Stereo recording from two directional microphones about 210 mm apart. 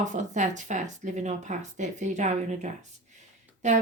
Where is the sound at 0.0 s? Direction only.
35° right (ahead or behind).